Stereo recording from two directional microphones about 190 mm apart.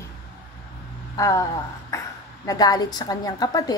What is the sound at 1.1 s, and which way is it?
Speech, 15° left (ahead or behind).